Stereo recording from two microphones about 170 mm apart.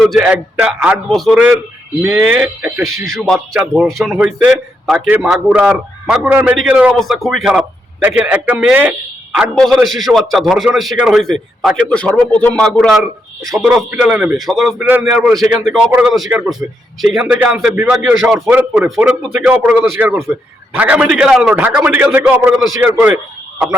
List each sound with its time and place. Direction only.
0.0 s a man's voice: 5° right (ahead or behind)
2.0 s a man's voice: 10° right (ahead or behind)
3.2 s a man's voice: centre (ahead or behind)